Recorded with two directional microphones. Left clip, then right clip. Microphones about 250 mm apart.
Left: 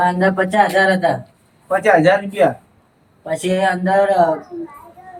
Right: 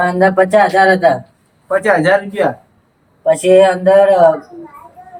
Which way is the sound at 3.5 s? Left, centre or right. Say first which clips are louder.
Right 10 dB; right.